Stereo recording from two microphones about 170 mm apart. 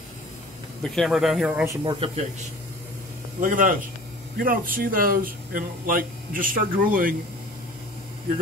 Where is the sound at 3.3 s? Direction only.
50° right (ahead or behind).